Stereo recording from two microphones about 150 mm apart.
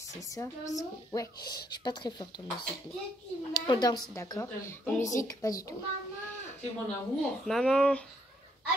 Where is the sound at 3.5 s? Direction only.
25° left (ahead or behind).